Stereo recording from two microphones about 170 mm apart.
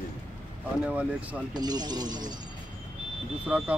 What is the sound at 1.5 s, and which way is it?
Speech, 25° right (ahead or behind).